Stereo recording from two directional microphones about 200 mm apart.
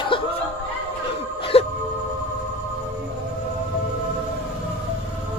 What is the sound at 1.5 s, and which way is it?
Music, 30° left (ahead or behind).